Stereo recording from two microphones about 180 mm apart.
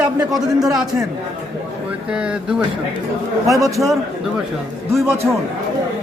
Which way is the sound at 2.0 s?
5° right (ahead or behind).